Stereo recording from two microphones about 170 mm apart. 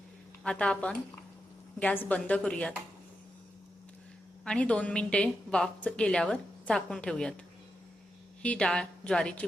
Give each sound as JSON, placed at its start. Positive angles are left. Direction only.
{"t": 0.4, "sound": "a woman's voice", "side_deg": 5}
{"t": 4.4, "sound": "a woman's voice", "side_deg": 5}
{"t": 8.4, "sound": "a woman's voice", "side_deg": 5}